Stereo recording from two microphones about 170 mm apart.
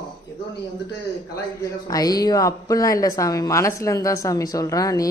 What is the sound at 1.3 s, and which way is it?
A man's voice, 20° left (ahead or behind).